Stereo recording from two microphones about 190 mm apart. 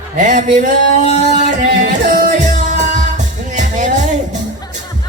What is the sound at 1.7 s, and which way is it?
Music, 45° right (ahead or behind).